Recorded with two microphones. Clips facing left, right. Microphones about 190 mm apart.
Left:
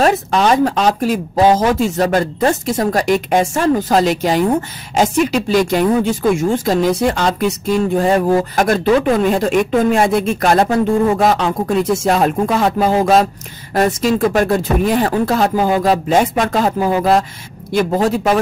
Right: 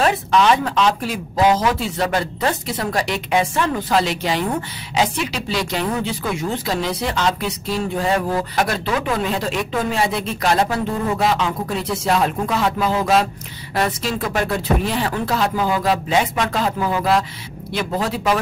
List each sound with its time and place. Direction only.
0.0 s speech: 45° left (ahead or behind)